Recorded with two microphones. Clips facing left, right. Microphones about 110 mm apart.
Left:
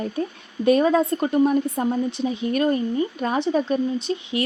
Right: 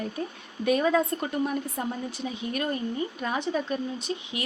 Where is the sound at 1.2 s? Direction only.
25° left (ahead or behind).